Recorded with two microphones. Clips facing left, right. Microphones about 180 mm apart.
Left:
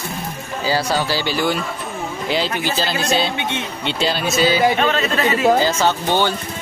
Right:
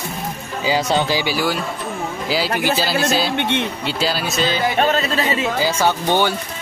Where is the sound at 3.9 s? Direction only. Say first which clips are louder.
Left 1 dB; 5° right (ahead or behind).